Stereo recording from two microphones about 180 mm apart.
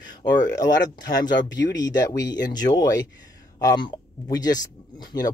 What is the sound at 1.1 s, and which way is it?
Speech, 20° left (ahead or behind).